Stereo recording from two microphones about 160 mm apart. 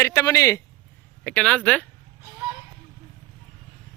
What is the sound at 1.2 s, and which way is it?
Speech, 5° left (ahead or behind).